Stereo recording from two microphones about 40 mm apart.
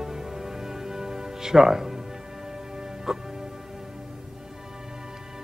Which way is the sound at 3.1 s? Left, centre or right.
Centre.